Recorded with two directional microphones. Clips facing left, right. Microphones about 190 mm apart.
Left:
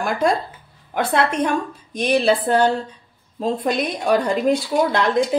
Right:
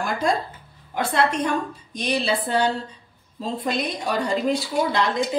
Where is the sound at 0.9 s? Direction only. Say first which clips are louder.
Left 3 dB; 60° left (ahead or behind).